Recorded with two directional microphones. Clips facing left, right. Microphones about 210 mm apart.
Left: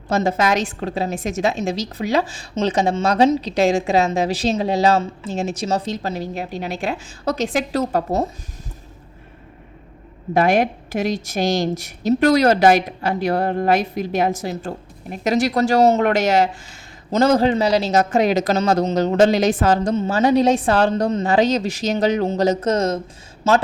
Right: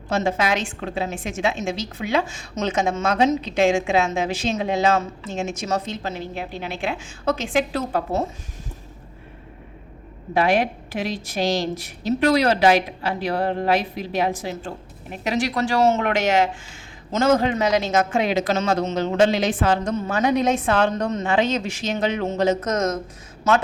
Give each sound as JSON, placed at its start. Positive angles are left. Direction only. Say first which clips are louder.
{"t": 0.1, "sound": "a woman's voice", "louder": "left 3 dB", "side_deg": 40}
{"t": 10.3, "sound": "a woman's voice", "louder": "left 3 dB", "side_deg": 45}